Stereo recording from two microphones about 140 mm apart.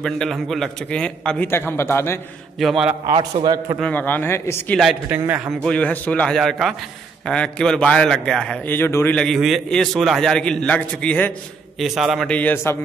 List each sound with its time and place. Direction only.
0.0 s a man's voice: centre (ahead or behind)
2.6 s a man's voice: 5° right (ahead or behind)
3.1 s a man's voice: 40° right (ahead or behind)
3.8 s a man's voice: 15° left (ahead or behind)
5.1 s a man's voice: 10° right (ahead or behind)
5.7 s a man's voice: 10° left (ahead or behind)
8.7 s a man's voice: 15° left (ahead or behind)
11.8 s a man's voice: centre (ahead or behind)
12.3 s a man's voice: 10° left (ahead or behind)